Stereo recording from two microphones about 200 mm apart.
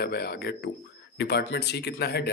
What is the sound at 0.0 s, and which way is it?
A man's voice, 50° left (ahead or behind).